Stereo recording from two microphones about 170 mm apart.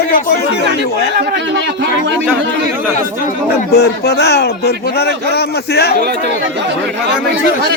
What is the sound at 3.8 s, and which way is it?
A man's voice, 75° left (ahead or behind).